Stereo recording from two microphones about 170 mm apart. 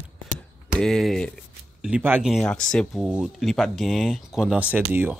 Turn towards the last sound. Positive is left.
turn(degrees=-10)  # may be behind; listen again after turning